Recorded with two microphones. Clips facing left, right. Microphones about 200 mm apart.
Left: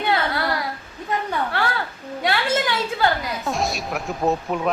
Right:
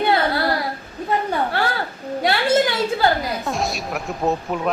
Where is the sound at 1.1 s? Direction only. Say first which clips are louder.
Right 3 dB; 35° right (ahead or behind).